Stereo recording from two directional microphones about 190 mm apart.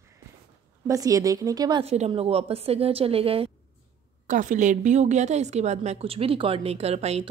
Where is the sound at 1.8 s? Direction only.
35° right (ahead or behind).